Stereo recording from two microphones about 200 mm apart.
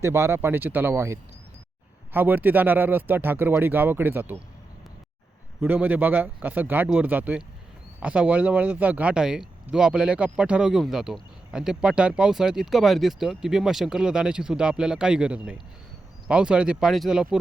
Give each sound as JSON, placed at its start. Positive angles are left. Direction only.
{"t": 0.0, "sound": "speech", "side_deg": -15}
{"t": 5.5, "sound": "speech", "side_deg": -10}